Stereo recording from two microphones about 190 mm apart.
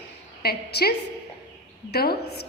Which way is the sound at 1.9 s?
55° left (ahead or behind).